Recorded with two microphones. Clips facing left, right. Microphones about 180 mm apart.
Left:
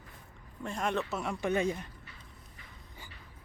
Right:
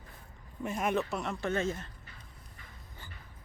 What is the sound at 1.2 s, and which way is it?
Speech, 15° left (ahead or behind).